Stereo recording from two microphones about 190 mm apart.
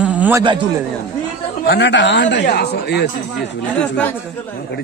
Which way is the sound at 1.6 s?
65° left (ahead or behind).